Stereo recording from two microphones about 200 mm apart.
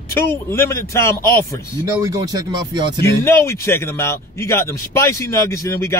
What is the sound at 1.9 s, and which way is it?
Speech, 20° right (ahead or behind).